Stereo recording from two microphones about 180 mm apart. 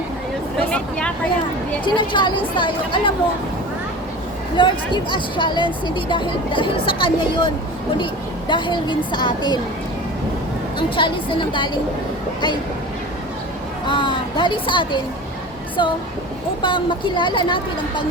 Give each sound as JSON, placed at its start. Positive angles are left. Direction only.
{"t": 0.7, "sound": "speech", "side_deg": 5}
{"t": 1.8, "sound": "speech", "side_deg": 25}
{"t": 4.6, "sound": "speech", "side_deg": 25}
{"t": 10.8, "sound": "speech", "side_deg": 25}
{"t": 13.8, "sound": "speech", "side_deg": 25}